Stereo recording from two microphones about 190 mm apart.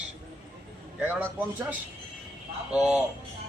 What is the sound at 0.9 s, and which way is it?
Speech, 10° right (ahead or behind).